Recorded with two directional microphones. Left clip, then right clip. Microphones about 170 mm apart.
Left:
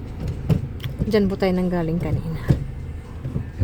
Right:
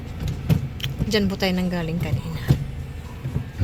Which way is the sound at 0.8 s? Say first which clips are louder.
Left 3 dB; 25° left (ahead or behind).